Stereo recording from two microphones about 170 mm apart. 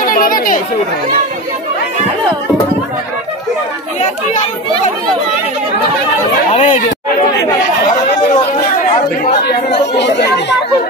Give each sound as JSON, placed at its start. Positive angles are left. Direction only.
{"t": 0.0, "sound": "chatter", "side_deg": 55}
{"t": 6.5, "sound": "speech", "side_deg": 40}
{"t": 9.9, "sound": "speech", "side_deg": 85}